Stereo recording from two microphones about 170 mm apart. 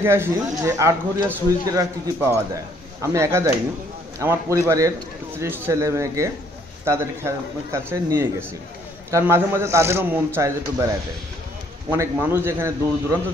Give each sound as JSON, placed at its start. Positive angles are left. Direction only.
{"t": 0.0, "sound": "speech", "side_deg": -15}
{"t": 11.9, "sound": "speech", "side_deg": -15}